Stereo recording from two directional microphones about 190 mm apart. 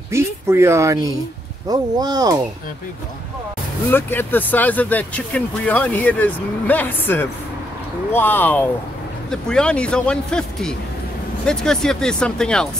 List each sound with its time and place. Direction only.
0.1 s speech: 15° right (ahead or behind)
3.9 s speech: 10° left (ahead or behind)